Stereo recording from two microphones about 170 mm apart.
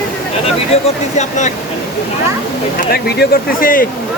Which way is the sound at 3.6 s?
55° left (ahead or behind).